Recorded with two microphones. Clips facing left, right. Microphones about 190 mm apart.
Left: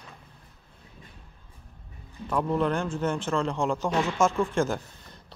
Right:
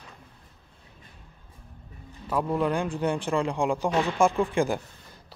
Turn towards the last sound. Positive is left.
turn(degrees=-15)  # may be behind; listen again after turning